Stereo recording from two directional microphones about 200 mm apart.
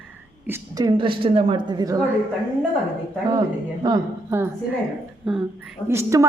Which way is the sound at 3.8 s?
15° right (ahead or behind).